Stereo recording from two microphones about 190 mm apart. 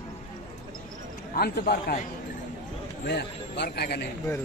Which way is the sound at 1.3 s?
50° left (ahead or behind).